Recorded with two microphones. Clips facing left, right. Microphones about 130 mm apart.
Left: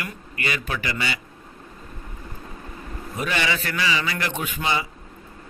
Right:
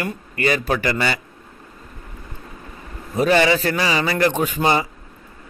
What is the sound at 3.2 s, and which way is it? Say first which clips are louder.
A man's voice: right 10 dB; 35° right (ahead or behind).